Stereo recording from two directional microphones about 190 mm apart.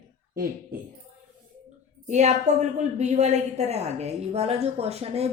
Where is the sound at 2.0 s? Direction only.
40° right (ahead or behind).